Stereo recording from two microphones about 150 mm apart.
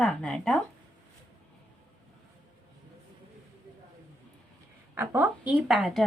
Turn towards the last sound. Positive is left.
turn(degrees=0)  # may be behind; listen again after turning